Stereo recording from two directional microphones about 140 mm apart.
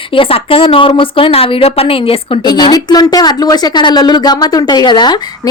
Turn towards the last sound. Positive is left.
turn(degrees=30)  # may be behind; listen again after turning